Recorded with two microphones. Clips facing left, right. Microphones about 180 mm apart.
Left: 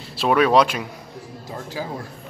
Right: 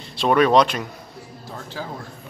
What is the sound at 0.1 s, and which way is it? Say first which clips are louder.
A man's voice: right 1 dB; 5° left (ahead or behind).